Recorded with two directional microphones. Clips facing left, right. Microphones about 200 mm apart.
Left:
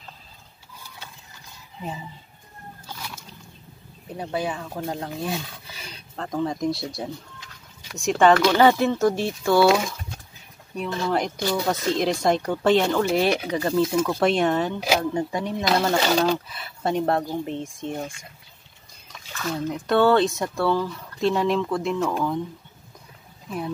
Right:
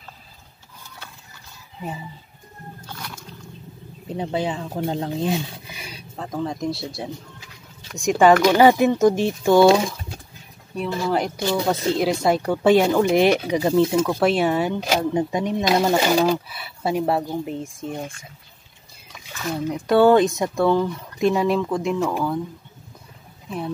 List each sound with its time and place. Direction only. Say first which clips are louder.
0.8 s a sound: right 1 dB; 15° left (ahead or behind)
4.1 s speech: right 3 dB; 25° right (ahead or behind)
5.8 s speech: even; 10° right (ahead or behind)
10.8 s speech: right 2 dB; 5° right (ahead or behind)
11.4 s speech: right 4 dB; 20° right (ahead or behind)
12.0 s speech: right 2 dB; 5° right (ahead or behind)
19.1 s speech: right 1 dB; 10° right (ahead or behind)